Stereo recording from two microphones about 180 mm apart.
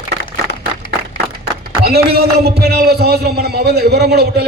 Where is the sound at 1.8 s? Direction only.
60° right (ahead or behind).